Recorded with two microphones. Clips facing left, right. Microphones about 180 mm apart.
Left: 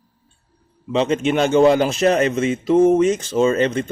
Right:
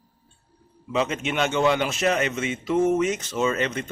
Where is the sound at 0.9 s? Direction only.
30° left (ahead or behind).